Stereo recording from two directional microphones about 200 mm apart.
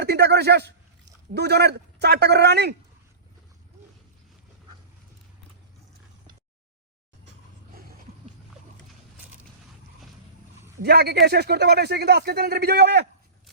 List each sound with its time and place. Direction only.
0.0 s a sound: 55° right (ahead or behind)
1.3 s a woman's voice: 55° right (ahead or behind)
10.8 s speech: 55° right (ahead or behind)